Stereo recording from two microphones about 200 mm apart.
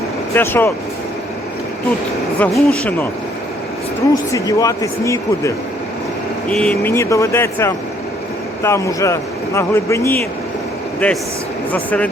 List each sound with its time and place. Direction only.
0.3 s speech: 10° left (ahead or behind)
2.4 s speech: 5° left (ahead or behind)
4.1 s speech: 15° left (ahead or behind)